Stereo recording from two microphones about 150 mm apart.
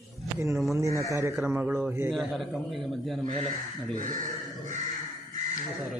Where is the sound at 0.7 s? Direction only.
20° right (ahead or behind).